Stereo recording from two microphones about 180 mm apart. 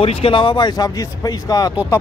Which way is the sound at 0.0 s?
35° left (ahead or behind).